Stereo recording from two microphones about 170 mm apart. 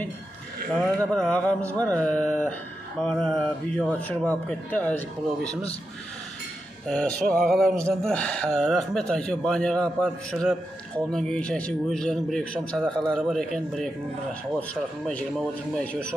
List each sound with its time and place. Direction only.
0.7 s speech: 5° left (ahead or behind)
5.5 s a man's voice: 35° left (ahead or behind)
6.9 s a sound: 5° left (ahead or behind)
14.6 s speech: 10° left (ahead or behind)